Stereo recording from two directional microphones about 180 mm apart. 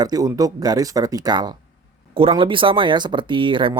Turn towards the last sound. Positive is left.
turn(degrees=-25)  # may be behind; listen again after turning